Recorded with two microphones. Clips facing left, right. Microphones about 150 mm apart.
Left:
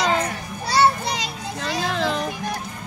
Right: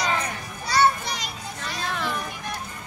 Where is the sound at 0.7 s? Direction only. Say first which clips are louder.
Left 2 dB; 30° left (ahead or behind).